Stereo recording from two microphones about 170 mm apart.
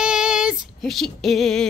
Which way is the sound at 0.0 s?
5° right (ahead or behind).